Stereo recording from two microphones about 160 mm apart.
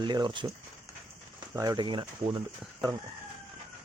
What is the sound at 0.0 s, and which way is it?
Speech, 30° right (ahead or behind).